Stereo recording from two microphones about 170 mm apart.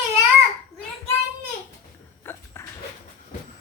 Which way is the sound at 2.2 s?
15° left (ahead or behind).